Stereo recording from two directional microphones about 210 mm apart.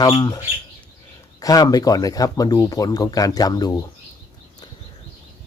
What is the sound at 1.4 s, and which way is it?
Speech, 15° left (ahead or behind).